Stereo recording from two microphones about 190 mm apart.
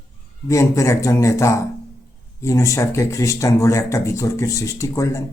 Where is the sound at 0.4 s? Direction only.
15° left (ahead or behind).